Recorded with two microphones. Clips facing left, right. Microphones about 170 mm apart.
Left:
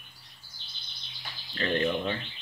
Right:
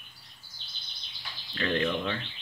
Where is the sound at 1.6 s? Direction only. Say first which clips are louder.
Left 1 dB; 25° left (ahead or behind).